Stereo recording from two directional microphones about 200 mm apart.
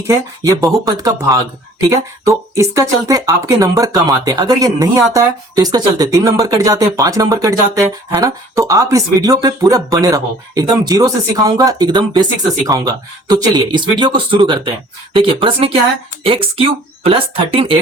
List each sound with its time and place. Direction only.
0.1 s speech: 15° right (ahead or behind)